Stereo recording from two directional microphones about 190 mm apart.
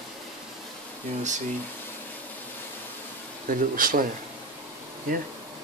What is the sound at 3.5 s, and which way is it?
Speech, 45° right (ahead or behind).